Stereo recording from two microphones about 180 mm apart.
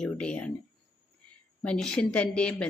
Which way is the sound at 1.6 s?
5° left (ahead or behind).